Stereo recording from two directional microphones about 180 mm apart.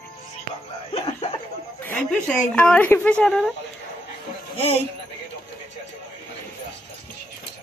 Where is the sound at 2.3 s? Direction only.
10° left (ahead or behind).